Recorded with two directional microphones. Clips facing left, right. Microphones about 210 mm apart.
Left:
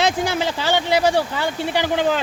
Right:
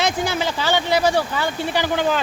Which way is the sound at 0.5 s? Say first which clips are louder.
Right 1 dB; 25° left (ahead or behind).